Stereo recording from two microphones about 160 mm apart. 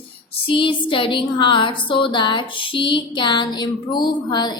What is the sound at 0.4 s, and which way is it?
Speech, 35° left (ahead or behind).